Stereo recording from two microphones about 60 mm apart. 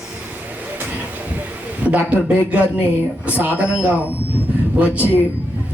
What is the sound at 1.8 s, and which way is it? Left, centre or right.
A man's voice, right.